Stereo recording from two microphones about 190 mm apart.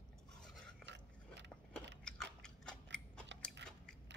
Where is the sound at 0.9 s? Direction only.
65° right (ahead or behind).